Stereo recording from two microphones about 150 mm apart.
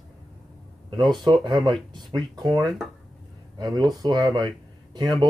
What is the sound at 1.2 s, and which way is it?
Speech, 30° right (ahead or behind).